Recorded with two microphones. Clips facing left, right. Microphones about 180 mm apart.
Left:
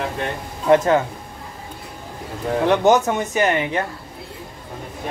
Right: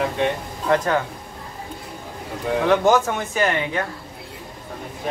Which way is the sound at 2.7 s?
20° left (ahead or behind).